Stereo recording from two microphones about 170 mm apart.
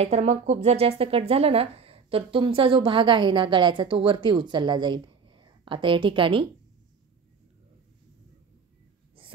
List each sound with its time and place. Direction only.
0.0 s speech: 40° right (ahead or behind)